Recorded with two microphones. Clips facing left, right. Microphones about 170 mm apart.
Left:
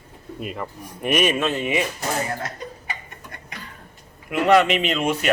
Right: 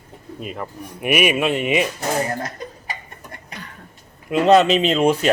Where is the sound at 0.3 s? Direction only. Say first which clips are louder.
Right 1 dB; centre (ahead or behind); by 1.9 s 20° right (ahead or behind).